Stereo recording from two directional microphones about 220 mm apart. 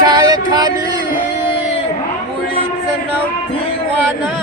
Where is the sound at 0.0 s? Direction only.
20° right (ahead or behind).